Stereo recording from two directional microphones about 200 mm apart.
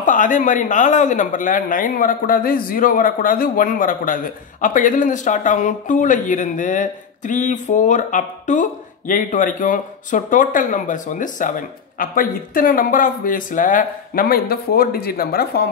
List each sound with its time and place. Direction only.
0.0 s speech: 40° left (ahead or behind)